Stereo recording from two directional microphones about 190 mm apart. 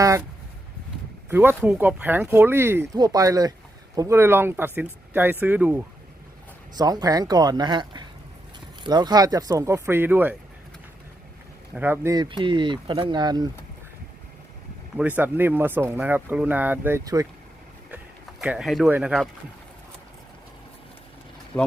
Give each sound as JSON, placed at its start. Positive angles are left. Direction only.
{"t": 1.3, "sound": "speech", "side_deg": -10}
{"t": 6.7, "sound": "speech", "side_deg": -20}
{"t": 11.7, "sound": "speech", "side_deg": -10}
{"t": 12.1, "sound": "speech", "side_deg": -25}
{"t": 14.9, "sound": "speech", "side_deg": -10}
{"t": 17.9, "sound": "speech", "side_deg": -5}
{"t": 21.5, "sound": "speech", "side_deg": 5}